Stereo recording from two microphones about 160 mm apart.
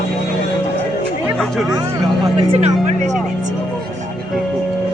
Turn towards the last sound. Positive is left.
turn(degrees=-45)  # may be behind; listen again after turning